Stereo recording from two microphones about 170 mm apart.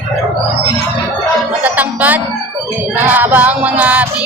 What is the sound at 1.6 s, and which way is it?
Music, 10° right (ahead or behind).